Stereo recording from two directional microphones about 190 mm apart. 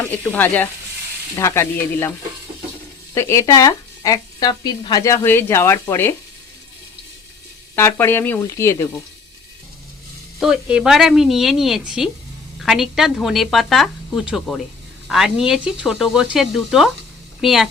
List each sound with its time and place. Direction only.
0.3 s speech: 10° left (ahead or behind)
3.2 s speech: 15° left (ahead or behind)
7.8 s speech: 10° left (ahead or behind)
10.4 s speech: 5° right (ahead or behind)